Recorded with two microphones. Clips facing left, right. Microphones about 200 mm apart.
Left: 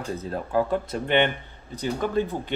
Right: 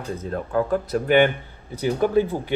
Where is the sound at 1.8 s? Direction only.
10° right (ahead or behind).